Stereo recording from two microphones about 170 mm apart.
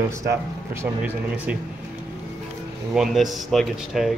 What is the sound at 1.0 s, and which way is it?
Speech, 10° right (ahead or behind).